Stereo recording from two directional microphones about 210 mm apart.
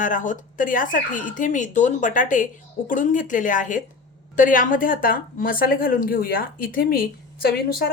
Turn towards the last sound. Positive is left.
turn(degrees=45)  # may be behind; listen again after turning